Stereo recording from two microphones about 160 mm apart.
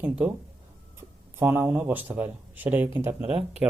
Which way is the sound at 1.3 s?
15° right (ahead or behind).